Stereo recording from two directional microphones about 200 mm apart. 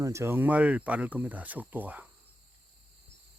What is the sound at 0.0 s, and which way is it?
Speech, 15° right (ahead or behind).